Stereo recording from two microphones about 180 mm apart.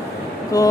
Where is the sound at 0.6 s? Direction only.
20° left (ahead or behind).